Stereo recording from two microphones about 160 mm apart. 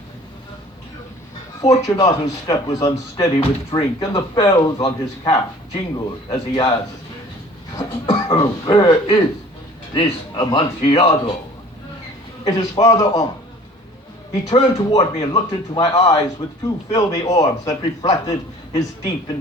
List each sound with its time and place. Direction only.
1.9 s speech: 20° left (ahead or behind)
7.8 s speech: 25° left (ahead or behind)
12.5 s speech: 25° left (ahead or behind)
14.4 s speech: 40° left (ahead or behind)
15.2 s speech: 25° left (ahead or behind)